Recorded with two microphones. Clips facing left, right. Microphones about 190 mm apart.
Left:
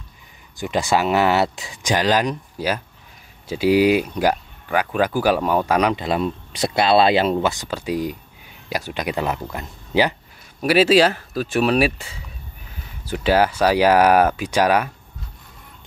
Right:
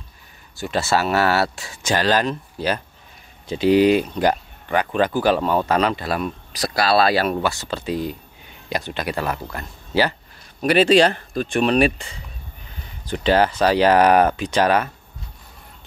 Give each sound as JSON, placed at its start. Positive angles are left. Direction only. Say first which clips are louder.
{"t": 0.6, "sound": "speech", "louder": "left 1 dB", "side_deg": 15}
{"t": 10.6, "sound": "speech", "louder": "even", "side_deg": 5}